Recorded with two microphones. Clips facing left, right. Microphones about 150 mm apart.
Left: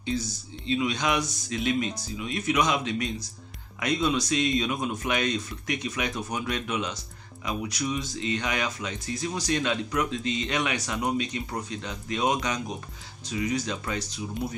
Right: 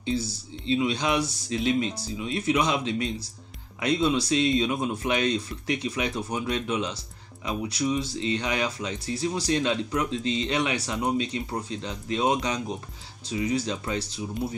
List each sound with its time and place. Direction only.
0.0 s speech: 30° right (ahead or behind)